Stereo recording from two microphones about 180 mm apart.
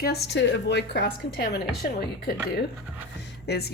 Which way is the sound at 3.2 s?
65° left (ahead or behind).